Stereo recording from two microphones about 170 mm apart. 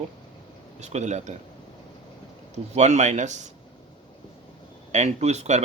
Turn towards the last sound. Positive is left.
turn(degrees=-40)  # may be behind; listen again after turning